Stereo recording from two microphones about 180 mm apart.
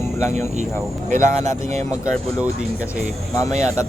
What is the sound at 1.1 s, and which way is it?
Speech, 45° right (ahead or behind).